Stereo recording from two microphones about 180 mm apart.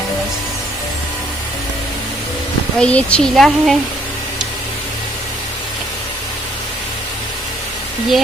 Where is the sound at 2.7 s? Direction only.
5° left (ahead or behind).